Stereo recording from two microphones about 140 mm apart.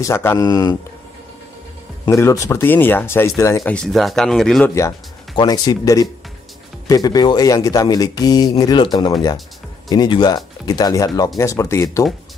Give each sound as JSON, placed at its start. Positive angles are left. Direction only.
{"t": 0.0, "sound": "a man's voice", "side_deg": 20}
{"t": 2.0, "sound": "a man's voice", "side_deg": 20}
{"t": 3.6, "sound": "speech", "side_deg": 5}
{"t": 4.6, "sound": "a man's voice", "side_deg": 20}
{"t": 5.3, "sound": "a man's voice", "side_deg": 30}